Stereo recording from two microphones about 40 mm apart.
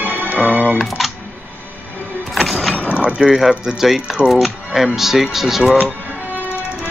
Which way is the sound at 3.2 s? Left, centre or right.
Centre.